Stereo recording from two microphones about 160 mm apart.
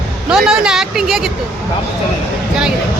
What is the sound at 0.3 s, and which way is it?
Speech, 5° right (ahead or behind).